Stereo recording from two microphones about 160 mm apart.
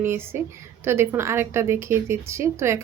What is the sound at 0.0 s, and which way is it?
A woman's voice, 15° right (ahead or behind).